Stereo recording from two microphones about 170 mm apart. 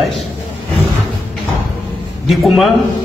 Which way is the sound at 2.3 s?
Centre (ahead or behind).